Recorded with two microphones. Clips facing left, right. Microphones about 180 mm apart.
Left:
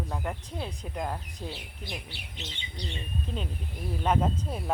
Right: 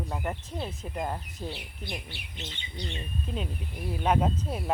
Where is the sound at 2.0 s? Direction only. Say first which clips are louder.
Right 1 dB; 50° right (ahead or behind).